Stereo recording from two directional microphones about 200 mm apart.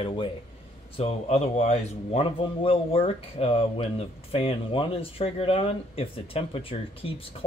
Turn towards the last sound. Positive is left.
turn(degrees=25)  # may be behind; listen again after turning